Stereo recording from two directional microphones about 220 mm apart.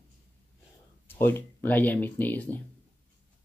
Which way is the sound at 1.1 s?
10° left (ahead or behind).